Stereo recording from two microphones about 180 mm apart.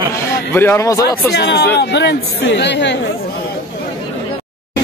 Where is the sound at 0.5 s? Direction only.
10° left (ahead or behind).